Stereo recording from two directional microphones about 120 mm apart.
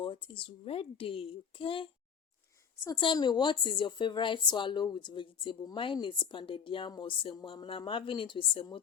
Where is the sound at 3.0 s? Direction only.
40° left (ahead or behind).